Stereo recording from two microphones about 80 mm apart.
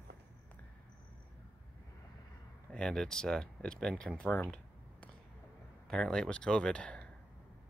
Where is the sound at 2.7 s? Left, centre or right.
Centre.